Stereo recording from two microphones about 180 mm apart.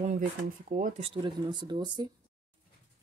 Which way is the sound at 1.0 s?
25° right (ahead or behind).